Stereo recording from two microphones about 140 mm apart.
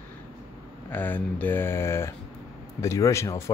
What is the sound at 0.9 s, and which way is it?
Speech, 15° left (ahead or behind).